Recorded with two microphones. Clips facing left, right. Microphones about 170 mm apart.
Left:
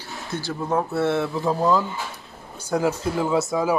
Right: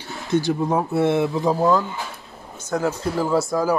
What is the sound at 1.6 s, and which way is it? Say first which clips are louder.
Speech: right 1 dB; centre (ahead or behind).